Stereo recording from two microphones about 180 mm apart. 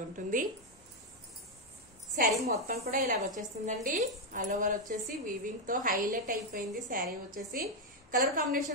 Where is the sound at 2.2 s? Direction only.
50° right (ahead or behind).